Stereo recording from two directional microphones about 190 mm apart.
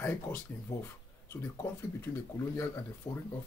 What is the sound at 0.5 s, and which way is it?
Speech, 10° left (ahead or behind).